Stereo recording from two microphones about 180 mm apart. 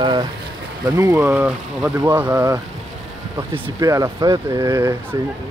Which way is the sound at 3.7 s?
20° right (ahead or behind).